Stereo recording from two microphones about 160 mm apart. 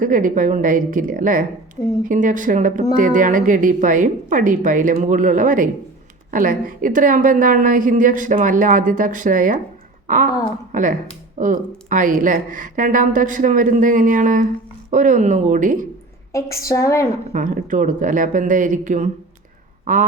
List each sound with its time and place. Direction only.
0.0 s a woman's voice: 55° right (ahead or behind)
10.7 s a woman's voice: 55° right (ahead or behind)
16.3 s a woman's voice: 20° left (ahead or behind)
17.3 s a woman's voice: 55° right (ahead or behind)